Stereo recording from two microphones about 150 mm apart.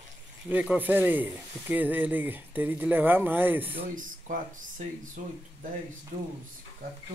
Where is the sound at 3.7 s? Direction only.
65° right (ahead or behind).